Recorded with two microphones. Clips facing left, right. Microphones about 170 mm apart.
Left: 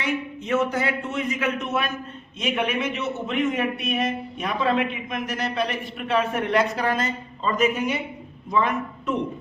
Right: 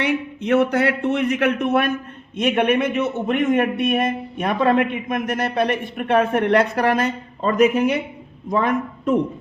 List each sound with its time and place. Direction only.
0.0 s a man's voice: 70° right (ahead or behind); by 9.1 s 50° right (ahead or behind)